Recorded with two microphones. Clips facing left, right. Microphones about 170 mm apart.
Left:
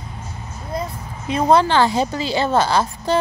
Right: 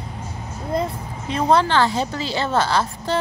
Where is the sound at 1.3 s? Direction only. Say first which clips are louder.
Left 2 dB; 10° left (ahead or behind).